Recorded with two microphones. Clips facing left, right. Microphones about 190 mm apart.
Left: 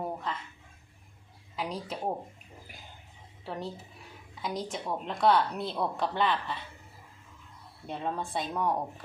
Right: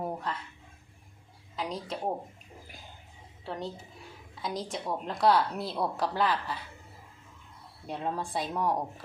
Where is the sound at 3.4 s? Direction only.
Centre (ahead or behind).